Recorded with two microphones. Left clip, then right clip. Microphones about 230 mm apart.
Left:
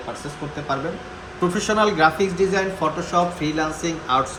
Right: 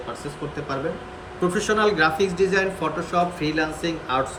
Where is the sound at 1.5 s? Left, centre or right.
Left.